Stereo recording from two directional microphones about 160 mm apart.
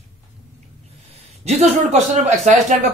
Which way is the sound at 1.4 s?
40° right (ahead or behind).